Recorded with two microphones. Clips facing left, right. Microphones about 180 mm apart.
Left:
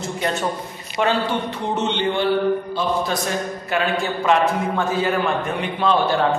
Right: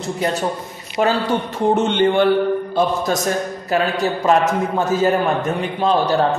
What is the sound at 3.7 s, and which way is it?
A man's voice, 40° right (ahead or behind).